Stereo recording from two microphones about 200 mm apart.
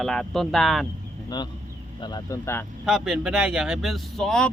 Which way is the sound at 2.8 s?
Centre (ahead or behind).